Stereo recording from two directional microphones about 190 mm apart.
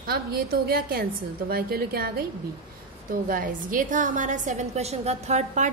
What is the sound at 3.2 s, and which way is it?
A woman's voice, 45° right (ahead or behind).